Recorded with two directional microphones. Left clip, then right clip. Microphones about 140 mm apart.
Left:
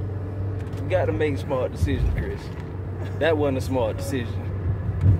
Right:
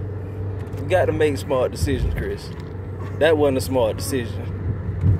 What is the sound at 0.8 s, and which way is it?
Speech, 30° right (ahead or behind).